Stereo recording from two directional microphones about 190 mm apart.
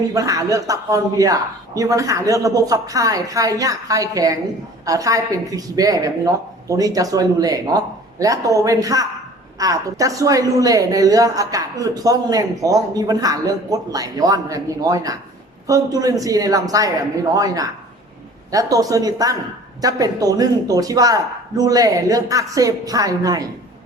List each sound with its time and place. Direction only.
0.1 s a woman's voice: 20° right (ahead or behind)